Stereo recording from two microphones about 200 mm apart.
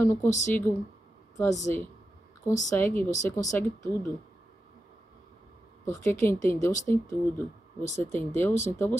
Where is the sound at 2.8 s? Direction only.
10° left (ahead or behind).